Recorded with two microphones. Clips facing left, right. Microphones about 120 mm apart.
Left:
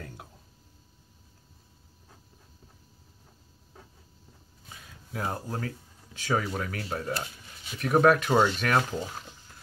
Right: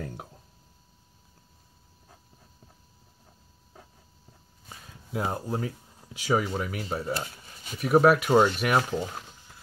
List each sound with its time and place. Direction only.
5.1 s speech: 15° right (ahead or behind)